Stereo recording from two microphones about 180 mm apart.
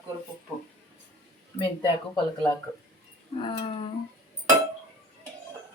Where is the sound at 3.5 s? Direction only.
30° left (ahead or behind).